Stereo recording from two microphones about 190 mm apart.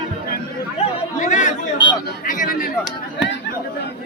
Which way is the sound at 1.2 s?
40° left (ahead or behind).